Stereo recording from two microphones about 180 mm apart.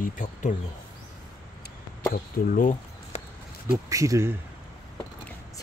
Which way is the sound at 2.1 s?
50° left (ahead or behind).